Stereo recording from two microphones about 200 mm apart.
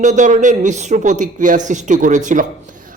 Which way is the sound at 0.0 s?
40° right (ahead or behind).